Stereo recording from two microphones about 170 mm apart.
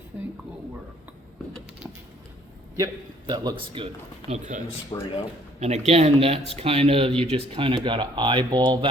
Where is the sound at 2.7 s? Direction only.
25° right (ahead or behind).